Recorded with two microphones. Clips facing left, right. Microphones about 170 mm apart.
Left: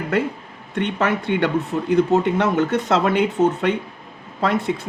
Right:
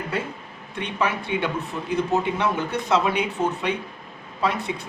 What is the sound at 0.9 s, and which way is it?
Speech, 70° left (ahead or behind).